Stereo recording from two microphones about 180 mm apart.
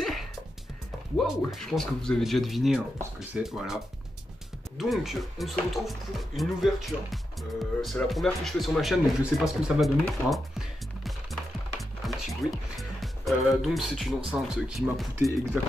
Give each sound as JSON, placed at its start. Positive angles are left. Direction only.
{"t": 1.1, "sound": "speech", "side_deg": 0}
{"t": 12.0, "sound": "music", "side_deg": 0}
{"t": 12.7, "sound": "speech", "side_deg": 0}